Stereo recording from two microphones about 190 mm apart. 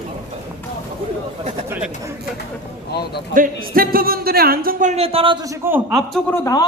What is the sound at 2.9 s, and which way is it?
Speech, 60° left (ahead or behind).